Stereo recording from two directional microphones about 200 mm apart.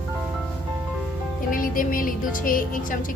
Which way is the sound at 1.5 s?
45° left (ahead or behind).